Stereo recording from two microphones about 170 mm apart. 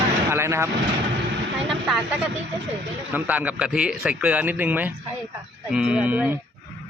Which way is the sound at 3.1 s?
10° right (ahead or behind).